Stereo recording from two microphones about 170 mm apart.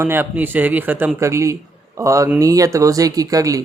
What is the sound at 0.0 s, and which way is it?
A man's voice, 15° right (ahead or behind).